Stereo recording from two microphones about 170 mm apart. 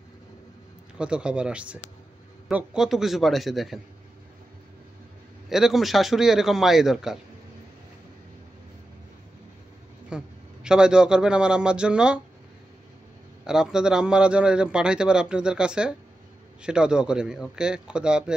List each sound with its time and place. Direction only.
0.9 s a man's voice: 5° right (ahead or behind)
5.5 s a man's voice: centre (ahead or behind)
10.0 s a man's voice: 5° right (ahead or behind)
13.5 s a man's voice: 5° right (ahead or behind)